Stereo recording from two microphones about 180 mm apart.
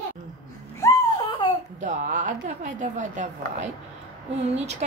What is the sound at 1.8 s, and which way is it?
A woman's voice, 45° right (ahead or behind).